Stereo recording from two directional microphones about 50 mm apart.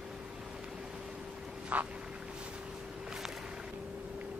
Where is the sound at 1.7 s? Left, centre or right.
Right.